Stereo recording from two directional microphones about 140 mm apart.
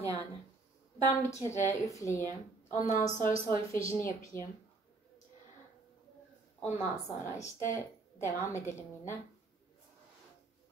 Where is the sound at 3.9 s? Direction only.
20° left (ahead or behind).